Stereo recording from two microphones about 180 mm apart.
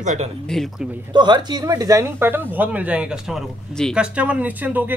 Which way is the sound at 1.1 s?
25° right (ahead or behind).